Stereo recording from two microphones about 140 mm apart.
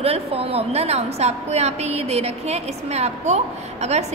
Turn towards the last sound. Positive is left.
turn(degrees=-50)  # may be behind; listen again after turning